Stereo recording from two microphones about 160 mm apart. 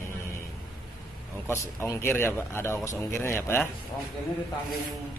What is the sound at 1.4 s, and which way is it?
Speech, 15° left (ahead or behind).